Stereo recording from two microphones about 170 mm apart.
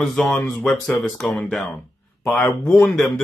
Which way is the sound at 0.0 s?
Centre (ahead or behind).